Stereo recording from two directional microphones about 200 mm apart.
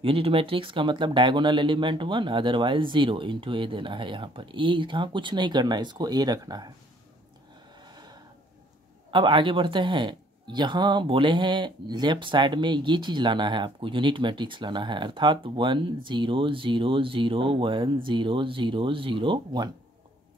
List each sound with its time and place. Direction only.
0.0 s speech: 25° right (ahead or behind)
7.9 s a sound: 20° right (ahead or behind)
9.1 s speech: 25° right (ahead or behind)